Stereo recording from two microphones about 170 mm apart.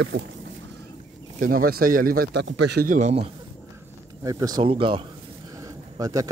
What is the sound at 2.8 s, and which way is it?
Speech, 45° right (ahead or behind).